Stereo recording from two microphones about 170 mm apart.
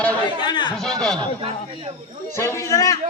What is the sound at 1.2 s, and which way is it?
Speech, 30° right (ahead or behind).